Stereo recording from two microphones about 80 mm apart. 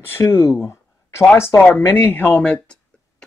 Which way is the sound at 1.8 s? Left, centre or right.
Left.